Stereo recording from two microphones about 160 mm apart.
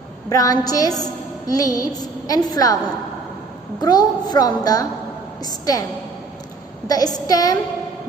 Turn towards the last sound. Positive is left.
turn(degrees=25)  # may be behind; listen again after turning